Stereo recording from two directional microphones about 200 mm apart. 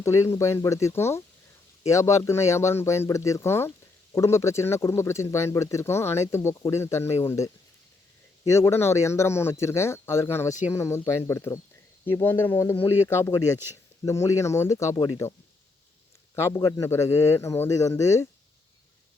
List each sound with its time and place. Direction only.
0.0 s speech: 15° left (ahead or behind)
16.3 s speech: 15° left (ahead or behind)